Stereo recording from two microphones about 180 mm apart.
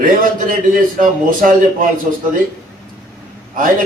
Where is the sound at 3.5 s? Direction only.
50° right (ahead or behind).